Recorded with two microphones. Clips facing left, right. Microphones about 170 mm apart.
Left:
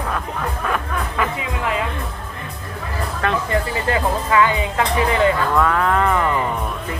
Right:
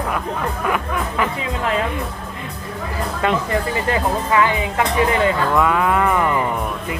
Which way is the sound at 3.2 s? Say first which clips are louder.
Right 2 dB; 20° right (ahead or behind).